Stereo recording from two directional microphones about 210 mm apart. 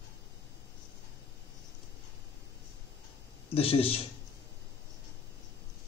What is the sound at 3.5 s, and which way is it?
Speech, 25° left (ahead or behind).